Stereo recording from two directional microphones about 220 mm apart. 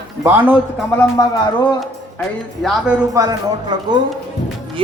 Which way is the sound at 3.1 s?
15° right (ahead or behind).